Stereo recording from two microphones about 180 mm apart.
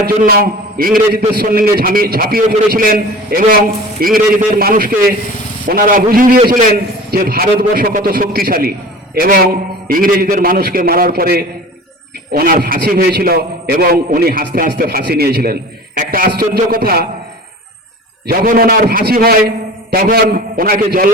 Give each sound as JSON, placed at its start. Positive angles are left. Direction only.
{"t": 0.2, "sound": "a man's voice", "side_deg": -55}
{"t": 18.3, "sound": "a man's voice", "side_deg": -50}